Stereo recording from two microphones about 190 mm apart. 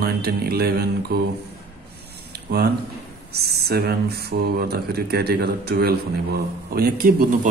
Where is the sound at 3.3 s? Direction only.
55° right (ahead or behind).